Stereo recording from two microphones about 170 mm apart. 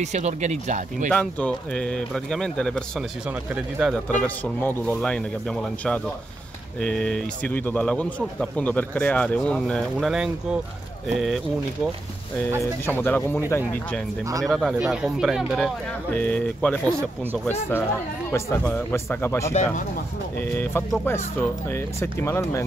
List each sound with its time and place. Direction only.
0.0 s speech: 45° right (ahead or behind)
1.1 s speech: 5° left (ahead or behind)
3.3 s speech: 5° right (ahead or behind)
12.8 s speech: 10° left (ahead or behind)
14.4 s speech: centre (ahead or behind)
16.1 s speech: 10° left (ahead or behind)
16.8 s speech: 10° right (ahead or behind)
17.5 s speech: 10° left (ahead or behind)